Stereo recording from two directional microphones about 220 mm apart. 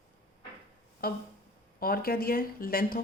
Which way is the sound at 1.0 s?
40° left (ahead or behind).